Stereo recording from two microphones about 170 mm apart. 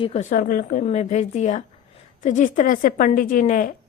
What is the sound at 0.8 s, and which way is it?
A woman's voice, 40° left (ahead or behind).